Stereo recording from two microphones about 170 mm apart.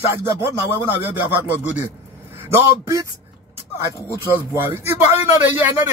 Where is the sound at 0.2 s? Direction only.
15° right (ahead or behind).